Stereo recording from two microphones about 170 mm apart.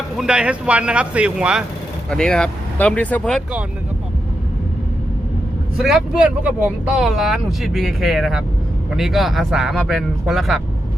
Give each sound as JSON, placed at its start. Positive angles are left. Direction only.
{"t": 0.2, "sound": "speech", "side_deg": -5}
{"t": 2.0, "sound": "speech", "side_deg": 5}
{"t": 5.7, "sound": "speech", "side_deg": 0}